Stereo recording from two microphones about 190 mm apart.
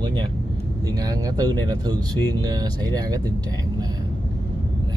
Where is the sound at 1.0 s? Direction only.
20° right (ahead or behind).